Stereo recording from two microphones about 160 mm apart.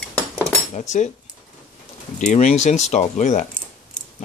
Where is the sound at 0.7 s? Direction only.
50° left (ahead or behind).